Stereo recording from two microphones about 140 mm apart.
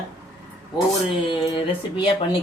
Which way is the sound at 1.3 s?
35° left (ahead or behind).